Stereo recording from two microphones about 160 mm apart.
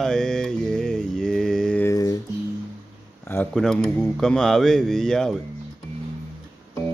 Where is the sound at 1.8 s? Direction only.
20° left (ahead or behind).